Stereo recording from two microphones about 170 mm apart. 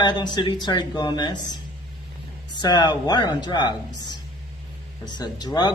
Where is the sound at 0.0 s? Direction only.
25° left (ahead or behind).